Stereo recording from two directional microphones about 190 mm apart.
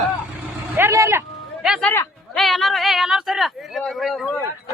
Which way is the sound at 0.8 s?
15° right (ahead or behind).